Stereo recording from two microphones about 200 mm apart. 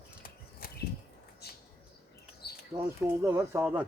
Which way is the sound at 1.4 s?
55° left (ahead or behind).